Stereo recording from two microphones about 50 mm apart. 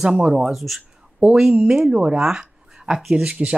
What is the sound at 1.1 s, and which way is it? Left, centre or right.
Speech, centre.